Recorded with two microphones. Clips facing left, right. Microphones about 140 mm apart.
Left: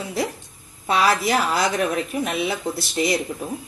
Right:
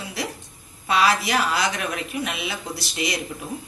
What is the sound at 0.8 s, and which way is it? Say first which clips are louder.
A woman's voice: left 1 dB; 35° left (ahead or behind).